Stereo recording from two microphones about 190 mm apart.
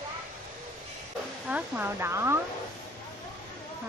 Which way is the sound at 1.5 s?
10° right (ahead or behind).